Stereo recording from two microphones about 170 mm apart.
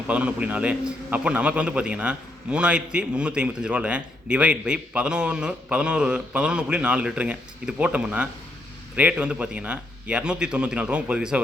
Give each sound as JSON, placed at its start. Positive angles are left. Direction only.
{"t": 0.1, "sound": "a man's voice", "side_deg": -10}